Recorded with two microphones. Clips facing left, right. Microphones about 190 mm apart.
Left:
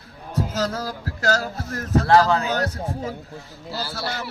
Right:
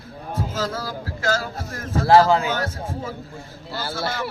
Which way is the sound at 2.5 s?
40° left (ahead or behind).